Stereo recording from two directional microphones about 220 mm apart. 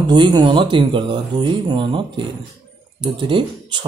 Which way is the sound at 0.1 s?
20° right (ahead or behind).